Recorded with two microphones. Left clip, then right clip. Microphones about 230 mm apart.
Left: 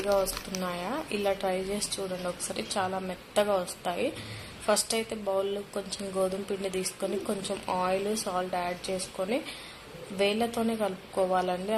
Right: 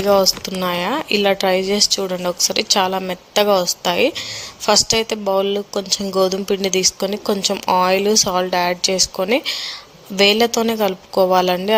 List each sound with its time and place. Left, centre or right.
0.1 s speech: right